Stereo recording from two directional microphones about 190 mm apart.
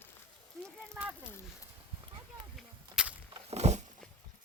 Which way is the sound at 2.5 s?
5° right (ahead or behind).